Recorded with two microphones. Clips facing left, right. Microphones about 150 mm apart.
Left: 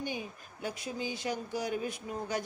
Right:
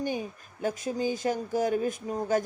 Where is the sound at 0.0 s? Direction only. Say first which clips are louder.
Right 6 dB; 45° right (ahead or behind).